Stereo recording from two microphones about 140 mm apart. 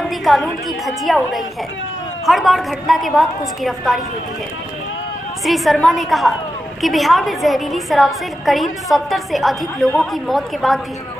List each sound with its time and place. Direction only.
0.0 s a woman's voice: centre (ahead or behind)
5.4 s a woman's voice: centre (ahead or behind)